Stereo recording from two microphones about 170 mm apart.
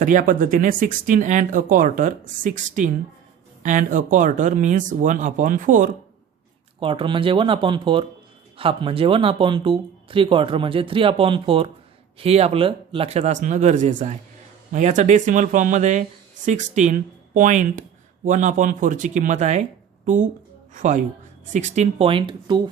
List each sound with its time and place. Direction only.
0.0 s speech: 50° right (ahead or behind)
6.7 s speech: 30° right (ahead or behind)